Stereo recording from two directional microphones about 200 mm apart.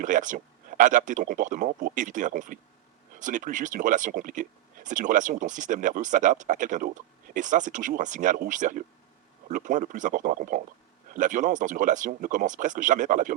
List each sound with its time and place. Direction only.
0.0 s speech: 40° right (ahead or behind)